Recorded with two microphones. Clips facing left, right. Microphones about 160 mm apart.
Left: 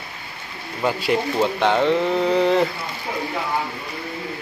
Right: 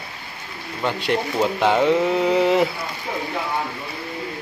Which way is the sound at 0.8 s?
Centre (ahead or behind).